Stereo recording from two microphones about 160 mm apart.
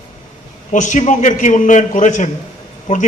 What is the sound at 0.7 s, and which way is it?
A man's voice, 50° left (ahead or behind).